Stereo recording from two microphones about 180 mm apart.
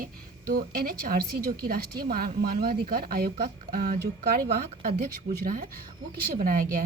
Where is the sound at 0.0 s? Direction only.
55° right (ahead or behind).